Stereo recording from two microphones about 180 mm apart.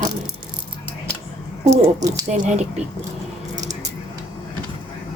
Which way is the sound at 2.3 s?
40° right (ahead or behind).